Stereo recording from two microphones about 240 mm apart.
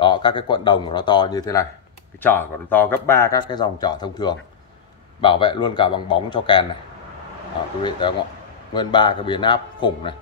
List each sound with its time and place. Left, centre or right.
0.0 s speech: centre
7.8 s speech: centre